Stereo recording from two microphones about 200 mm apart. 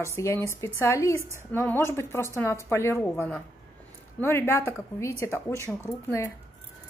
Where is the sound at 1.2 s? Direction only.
15° right (ahead or behind).